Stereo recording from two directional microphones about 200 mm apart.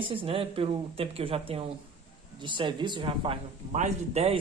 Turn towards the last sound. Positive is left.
turn(degrees=-35)  # may be behind; listen again after turning